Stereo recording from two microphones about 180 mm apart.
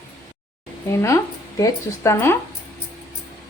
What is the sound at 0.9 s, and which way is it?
Speech, 15° left (ahead or behind).